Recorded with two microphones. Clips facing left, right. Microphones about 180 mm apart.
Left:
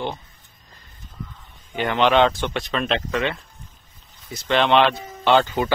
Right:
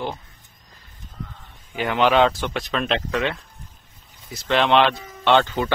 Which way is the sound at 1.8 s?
5° right (ahead or behind).